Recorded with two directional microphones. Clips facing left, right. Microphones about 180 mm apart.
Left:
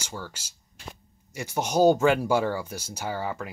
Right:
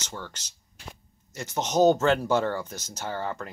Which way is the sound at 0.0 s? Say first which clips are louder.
Left 1 dB; 5° left (ahead or behind).